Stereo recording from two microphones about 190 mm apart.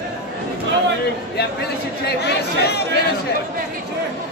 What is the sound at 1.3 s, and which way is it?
Speech, 60° left (ahead or behind).